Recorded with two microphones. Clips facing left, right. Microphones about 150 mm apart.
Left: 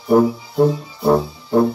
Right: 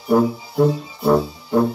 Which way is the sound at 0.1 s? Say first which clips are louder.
Left 2 dB; 20° left (ahead or behind).